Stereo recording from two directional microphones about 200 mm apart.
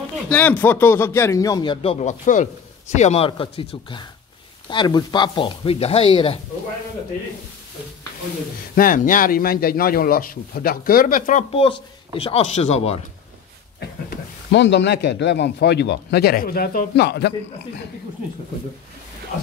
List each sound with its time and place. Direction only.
0.3 s speech: 10° left (ahead or behind); by 6.4 s 25° left (ahead or behind)
8.7 s a man's voice: 45° left (ahead or behind)
14.5 s speech: 60° left (ahead or behind)